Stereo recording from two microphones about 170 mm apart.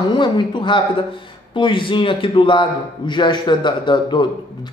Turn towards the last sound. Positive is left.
turn(degrees=25)  # may be behind; listen again after turning